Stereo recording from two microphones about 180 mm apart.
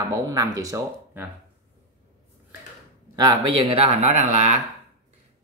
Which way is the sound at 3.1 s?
25° right (ahead or behind).